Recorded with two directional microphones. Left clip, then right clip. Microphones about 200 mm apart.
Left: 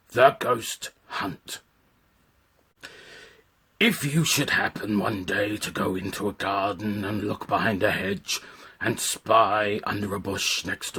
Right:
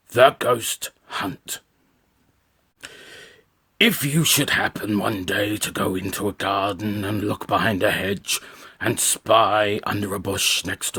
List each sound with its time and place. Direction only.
0.1 s speech: 35° right (ahead or behind)
2.8 s a sound: 35° right (ahead or behind)
3.8 s speech: 35° right (ahead or behind)